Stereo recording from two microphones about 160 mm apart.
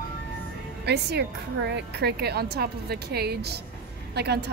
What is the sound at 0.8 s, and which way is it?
Speech, 90° right.